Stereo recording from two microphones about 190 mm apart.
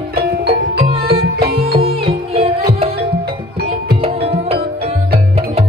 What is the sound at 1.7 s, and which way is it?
Music, 30° right (ahead or behind).